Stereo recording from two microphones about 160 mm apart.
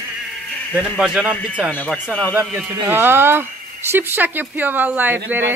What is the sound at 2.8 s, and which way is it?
A woman's voice, 15° right (ahead or behind).